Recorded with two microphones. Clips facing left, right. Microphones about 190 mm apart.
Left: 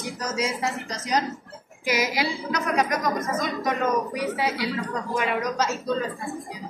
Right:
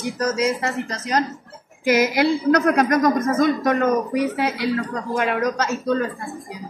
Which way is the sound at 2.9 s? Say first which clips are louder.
Right 8 dB; 45° right (ahead or behind).